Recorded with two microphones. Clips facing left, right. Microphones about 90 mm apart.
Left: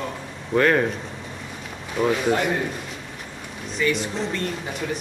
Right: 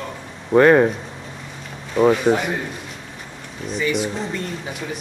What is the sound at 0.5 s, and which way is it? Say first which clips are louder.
Speech: right 6 dB; 25° right (ahead or behind).